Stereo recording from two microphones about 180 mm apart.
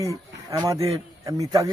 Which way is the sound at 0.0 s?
20° right (ahead or behind).